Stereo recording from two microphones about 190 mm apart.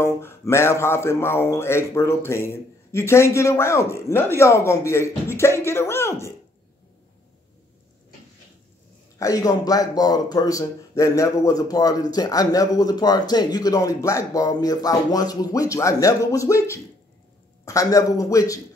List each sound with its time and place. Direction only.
0.0 s speech: 15° left (ahead or behind)
9.2 s speech: 20° left (ahead or behind)